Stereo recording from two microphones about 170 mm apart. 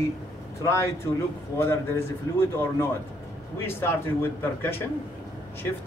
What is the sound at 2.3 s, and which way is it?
Speech, 15° left (ahead or behind).